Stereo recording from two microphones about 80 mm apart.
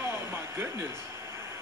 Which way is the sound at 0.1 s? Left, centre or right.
Right.